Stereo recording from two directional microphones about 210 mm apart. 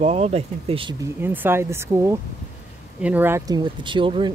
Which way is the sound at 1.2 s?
10° right (ahead or behind).